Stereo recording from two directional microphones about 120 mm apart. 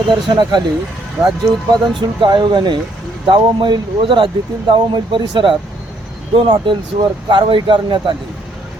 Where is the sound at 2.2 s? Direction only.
40° right (ahead or behind).